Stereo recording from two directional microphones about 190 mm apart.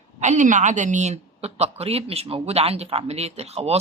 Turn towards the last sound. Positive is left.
turn(degrees=-35)  # may be behind; listen again after turning